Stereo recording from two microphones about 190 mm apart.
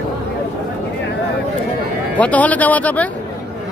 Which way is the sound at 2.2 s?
10° left (ahead or behind).